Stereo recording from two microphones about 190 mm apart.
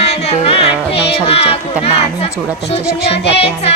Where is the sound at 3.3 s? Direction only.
30° left (ahead or behind).